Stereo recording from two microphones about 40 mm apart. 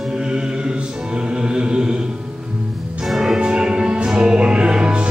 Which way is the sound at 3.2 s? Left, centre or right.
Centre.